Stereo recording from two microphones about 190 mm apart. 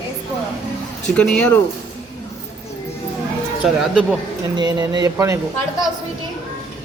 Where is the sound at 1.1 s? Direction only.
5° left (ahead or behind).